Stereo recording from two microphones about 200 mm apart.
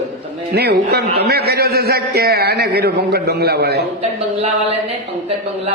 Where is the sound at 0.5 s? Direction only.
55° right (ahead or behind).